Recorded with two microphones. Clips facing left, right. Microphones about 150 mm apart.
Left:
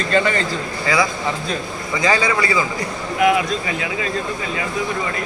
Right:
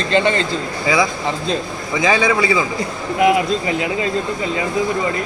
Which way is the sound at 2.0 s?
20° right (ahead or behind).